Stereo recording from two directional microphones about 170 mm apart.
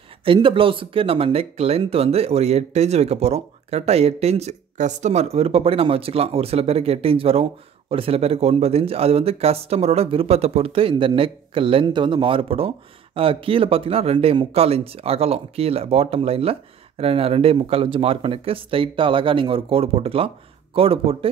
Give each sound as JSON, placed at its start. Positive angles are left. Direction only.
{"t": 0.2, "sound": "speech", "side_deg": -30}